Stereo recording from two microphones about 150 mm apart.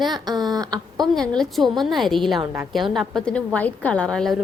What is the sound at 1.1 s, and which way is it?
A woman's voice, 5° left (ahead or behind).